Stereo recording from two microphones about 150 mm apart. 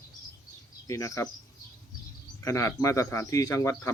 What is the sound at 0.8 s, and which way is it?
Speech, 20° left (ahead or behind).